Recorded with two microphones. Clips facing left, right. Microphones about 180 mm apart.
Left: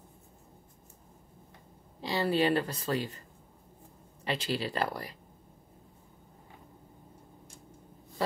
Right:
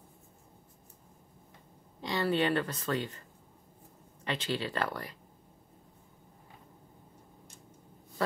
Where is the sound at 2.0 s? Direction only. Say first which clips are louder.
Left 2 dB; 35° left (ahead or behind).